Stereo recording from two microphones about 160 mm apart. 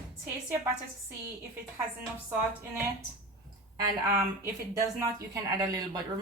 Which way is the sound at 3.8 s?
20° right (ahead or behind).